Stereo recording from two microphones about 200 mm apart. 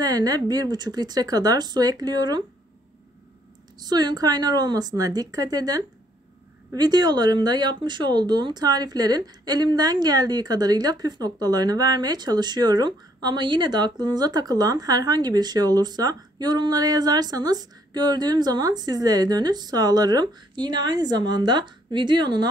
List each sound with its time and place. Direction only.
0.0 s speech: 20° right (ahead or behind)
3.8 s speech: 20° right (ahead or behind)